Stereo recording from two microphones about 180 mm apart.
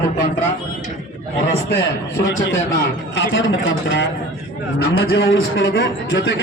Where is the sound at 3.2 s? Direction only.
90° left.